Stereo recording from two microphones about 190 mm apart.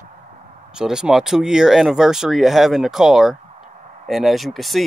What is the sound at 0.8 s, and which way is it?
Speech, 5° right (ahead or behind).